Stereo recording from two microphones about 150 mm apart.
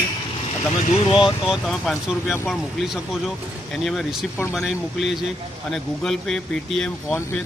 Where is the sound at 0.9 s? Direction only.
40° left (ahead or behind).